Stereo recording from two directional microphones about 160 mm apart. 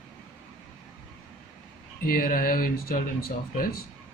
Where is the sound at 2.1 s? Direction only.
65° left (ahead or behind).